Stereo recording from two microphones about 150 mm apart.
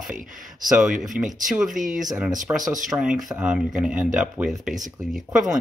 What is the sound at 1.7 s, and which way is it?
Speech, 60° right (ahead or behind).